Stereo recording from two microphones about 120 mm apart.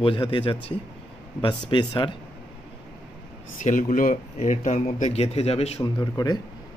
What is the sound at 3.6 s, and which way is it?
Speech, 90° left.